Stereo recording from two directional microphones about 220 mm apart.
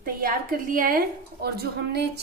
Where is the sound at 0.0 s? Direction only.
40° right (ahead or behind).